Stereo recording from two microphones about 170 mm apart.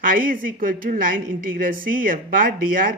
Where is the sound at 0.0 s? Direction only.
55° right (ahead or behind).